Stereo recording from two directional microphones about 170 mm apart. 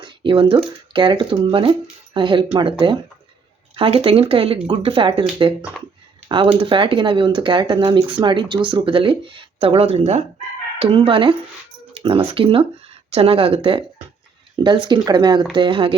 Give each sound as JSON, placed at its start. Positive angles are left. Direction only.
{"t": 0.0, "sound": "speech", "side_deg": -30}
{"t": 6.2, "sound": "speech", "side_deg": -30}